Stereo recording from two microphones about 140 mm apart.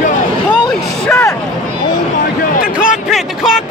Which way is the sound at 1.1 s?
20° left (ahead or behind).